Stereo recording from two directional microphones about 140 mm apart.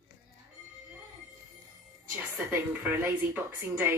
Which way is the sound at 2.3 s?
15° right (ahead or behind).